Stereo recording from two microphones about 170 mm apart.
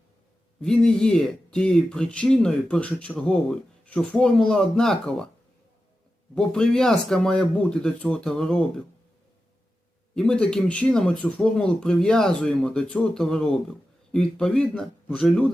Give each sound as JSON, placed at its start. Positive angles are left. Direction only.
{"t": 0.6, "sound": "speech", "side_deg": 5}
{"t": 6.3, "sound": "speech", "side_deg": 5}
{"t": 10.2, "sound": "speech", "side_deg": 5}